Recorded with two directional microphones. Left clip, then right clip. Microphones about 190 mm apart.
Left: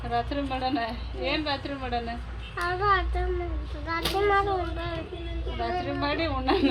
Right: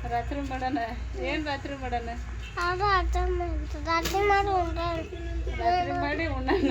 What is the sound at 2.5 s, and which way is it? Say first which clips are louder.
A child's voice: even; 65° right (ahead or behind).